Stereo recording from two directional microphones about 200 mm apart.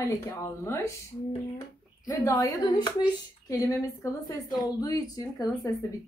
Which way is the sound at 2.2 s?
15° left (ahead or behind).